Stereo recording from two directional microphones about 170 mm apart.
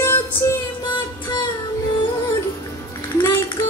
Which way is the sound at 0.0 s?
15° left (ahead or behind).